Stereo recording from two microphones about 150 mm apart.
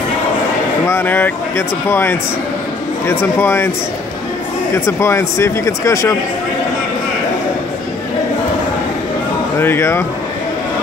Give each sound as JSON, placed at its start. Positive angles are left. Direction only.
{"t": 0.8, "sound": "speech", "side_deg": 15}
{"t": 4.7, "sound": "speech", "side_deg": 20}
{"t": 9.6, "sound": "speech", "side_deg": 15}